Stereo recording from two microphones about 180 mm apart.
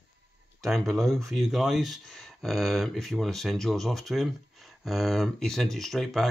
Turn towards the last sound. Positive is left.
turn(degrees=0)  # may be behind; listen again after turning